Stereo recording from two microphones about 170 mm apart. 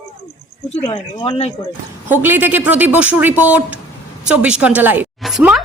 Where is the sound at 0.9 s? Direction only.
30° left (ahead or behind).